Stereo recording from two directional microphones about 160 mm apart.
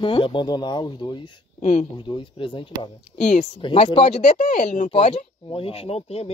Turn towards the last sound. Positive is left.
turn(degrees=40)  # may be behind; listen again after turning